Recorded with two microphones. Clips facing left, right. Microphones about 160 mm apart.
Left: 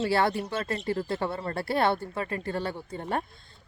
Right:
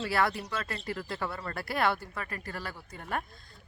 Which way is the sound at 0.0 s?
30° left (ahead or behind).